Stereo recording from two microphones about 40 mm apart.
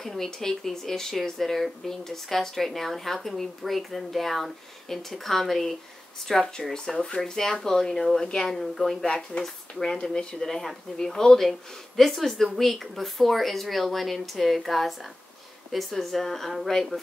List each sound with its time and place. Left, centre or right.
0.0 s speech: centre
9.0 s speech: left
9.4 s speech: centre